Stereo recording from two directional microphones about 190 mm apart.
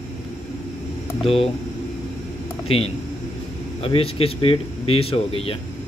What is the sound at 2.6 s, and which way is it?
Speech, 30° left (ahead or behind).